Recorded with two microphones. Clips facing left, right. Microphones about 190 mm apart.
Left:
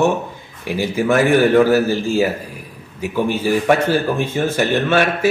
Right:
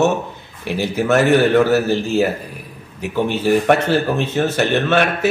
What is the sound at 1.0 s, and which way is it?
Speech, 10° left (ahead or behind).